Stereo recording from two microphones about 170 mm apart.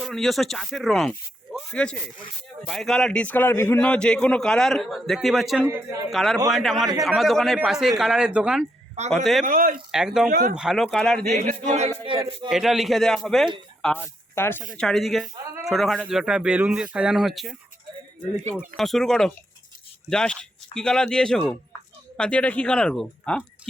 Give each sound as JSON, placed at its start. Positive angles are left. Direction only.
{"t": 0.0, "sound": "a man's voice", "side_deg": 0}
{"t": 5.6, "sound": "a man's voice", "side_deg": -15}
{"t": 6.1, "sound": "a man's voice", "side_deg": 0}
{"t": 9.4, "sound": "speech", "side_deg": -55}
{"t": 9.9, "sound": "a man's voice", "side_deg": -5}
{"t": 10.2, "sound": "speech", "side_deg": -55}
{"t": 10.5, "sound": "a man's voice", "side_deg": -5}
{"t": 11.3, "sound": "speech", "side_deg": -55}
{"t": 12.0, "sound": "speech", "side_deg": -30}
{"t": 12.5, "sound": "a man's voice", "side_deg": 0}
{"t": 14.8, "sound": "a man's voice", "side_deg": 0}
{"t": 18.8, "sound": "a man's voice", "side_deg": 0}